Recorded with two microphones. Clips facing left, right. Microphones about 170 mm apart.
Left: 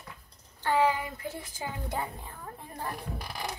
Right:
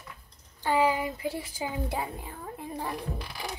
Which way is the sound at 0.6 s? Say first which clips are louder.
Right 1 dB; 15° right (ahead or behind).